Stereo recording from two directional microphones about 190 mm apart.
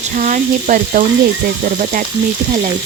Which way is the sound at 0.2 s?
45° right (ahead or behind).